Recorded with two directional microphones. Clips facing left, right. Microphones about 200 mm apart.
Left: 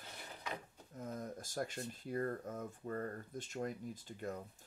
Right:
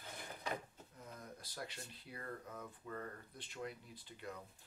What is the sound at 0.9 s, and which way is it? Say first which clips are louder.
Speech: left 10 dB; 45° left (ahead or behind).